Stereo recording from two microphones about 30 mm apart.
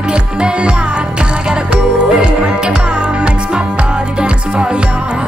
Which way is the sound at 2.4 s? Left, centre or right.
Right.